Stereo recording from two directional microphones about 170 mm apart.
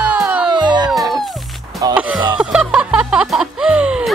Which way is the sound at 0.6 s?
25° right (ahead or behind).